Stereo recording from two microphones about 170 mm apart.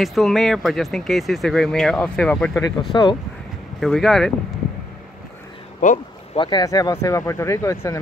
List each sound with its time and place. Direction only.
0.0 s speech: centre (ahead or behind)
2.9 s speech: 25° left (ahead or behind)
3.8 s speech: centre (ahead or behind)
5.8 s speech: 50° left (ahead or behind)
6.3 s speech: 25° left (ahead or behind)